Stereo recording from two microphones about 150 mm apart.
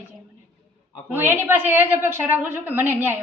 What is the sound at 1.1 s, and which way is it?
Speech, 15° right (ahead or behind).